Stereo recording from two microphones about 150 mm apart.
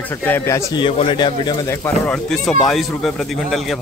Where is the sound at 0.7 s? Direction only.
35° left (ahead or behind).